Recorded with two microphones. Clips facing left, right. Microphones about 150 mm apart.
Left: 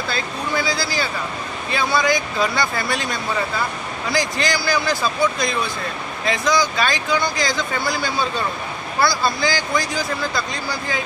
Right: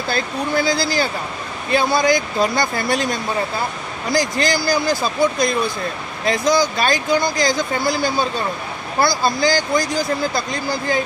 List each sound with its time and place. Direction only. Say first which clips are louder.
0.1 s speech: right 5 dB; 50° right (ahead or behind)
6.2 s speech: right 3 dB; 40° right (ahead or behind)